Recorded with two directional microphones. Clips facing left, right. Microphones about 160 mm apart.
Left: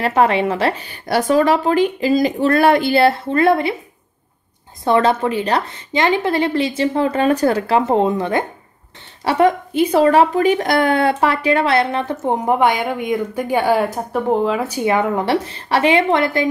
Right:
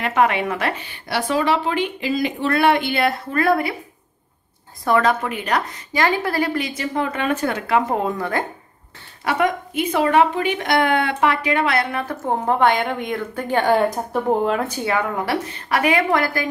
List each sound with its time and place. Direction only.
0.0 s speech: 35° left (ahead or behind)
4.8 s a woman's voice: 25° left (ahead or behind)
9.2 s speech: 30° left (ahead or behind); by 14.8 s 5° left (ahead or behind)
14.8 s a woman's voice: 20° left (ahead or behind)